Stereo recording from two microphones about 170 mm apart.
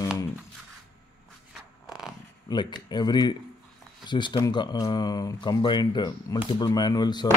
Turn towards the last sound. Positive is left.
turn(degrees=25)  # may be behind; listen again after turning